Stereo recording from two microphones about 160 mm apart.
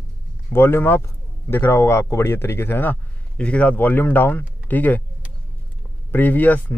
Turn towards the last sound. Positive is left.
turn(degrees=10)  # may be behind; listen again after turning